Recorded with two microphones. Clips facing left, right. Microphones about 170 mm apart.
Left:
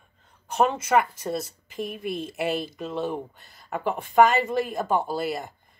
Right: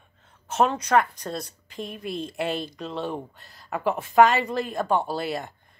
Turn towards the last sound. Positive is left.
turn(degrees=0)  # may be behind; listen again after turning